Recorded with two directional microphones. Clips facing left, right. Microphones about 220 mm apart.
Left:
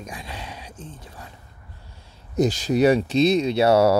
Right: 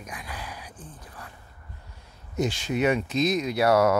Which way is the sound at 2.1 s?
35° left (ahead or behind).